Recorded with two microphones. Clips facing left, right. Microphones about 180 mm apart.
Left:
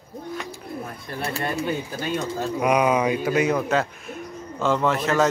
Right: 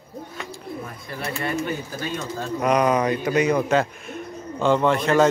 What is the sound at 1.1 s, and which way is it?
Speech, 35° left (ahead or behind).